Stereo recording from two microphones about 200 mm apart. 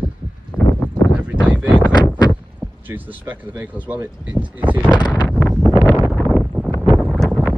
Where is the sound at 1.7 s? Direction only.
20° left (ahead or behind).